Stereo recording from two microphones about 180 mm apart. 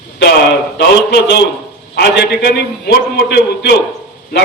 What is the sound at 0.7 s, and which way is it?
A man's voice, 65° left (ahead or behind).